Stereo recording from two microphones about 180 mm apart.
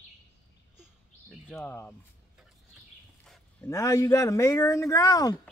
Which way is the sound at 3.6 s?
15° left (ahead or behind).